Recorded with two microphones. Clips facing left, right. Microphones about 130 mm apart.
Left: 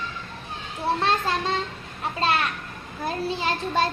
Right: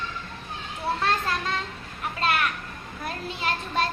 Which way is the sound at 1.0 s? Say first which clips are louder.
Left 1 dB; 25° left (ahead or behind).